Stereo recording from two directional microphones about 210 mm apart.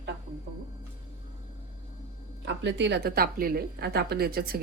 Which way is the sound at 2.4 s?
55° right (ahead or behind).